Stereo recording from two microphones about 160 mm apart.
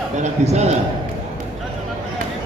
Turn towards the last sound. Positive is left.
turn(degrees=-45)  # may be behind; listen again after turning